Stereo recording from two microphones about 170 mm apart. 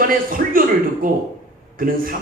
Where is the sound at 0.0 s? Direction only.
55° right (ahead or behind).